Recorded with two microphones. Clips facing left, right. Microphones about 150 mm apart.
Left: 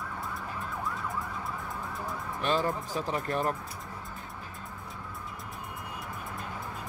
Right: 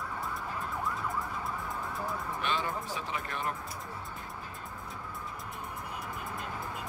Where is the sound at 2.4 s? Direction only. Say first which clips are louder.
Left 6 dB; 40° left (ahead or behind).